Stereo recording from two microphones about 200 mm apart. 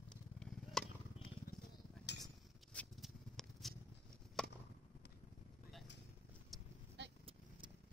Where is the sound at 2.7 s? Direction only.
5° left (ahead or behind).